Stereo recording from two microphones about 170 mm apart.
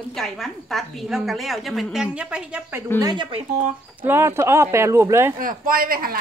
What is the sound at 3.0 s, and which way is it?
Speech, 25° right (ahead or behind).